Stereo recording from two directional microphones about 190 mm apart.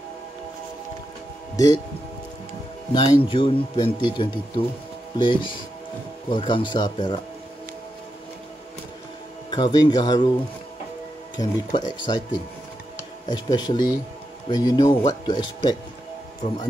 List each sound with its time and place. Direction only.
2.9 s a man's voice: 25° left (ahead or behind)
9.5 s a man's voice: 20° left (ahead or behind)
11.3 s a man's voice: 25° left (ahead or behind)